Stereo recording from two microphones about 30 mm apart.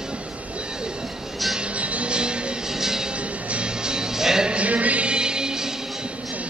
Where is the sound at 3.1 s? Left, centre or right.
Right.